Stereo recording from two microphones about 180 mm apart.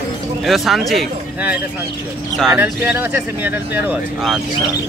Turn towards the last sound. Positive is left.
turn(degrees=-10)  # may be behind; listen again after turning